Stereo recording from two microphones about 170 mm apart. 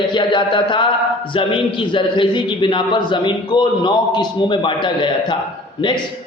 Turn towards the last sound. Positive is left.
turn(degrees=30)  # may be behind; listen again after turning